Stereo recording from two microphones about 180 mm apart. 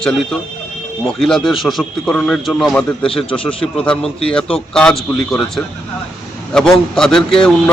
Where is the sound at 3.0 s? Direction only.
30° left (ahead or behind).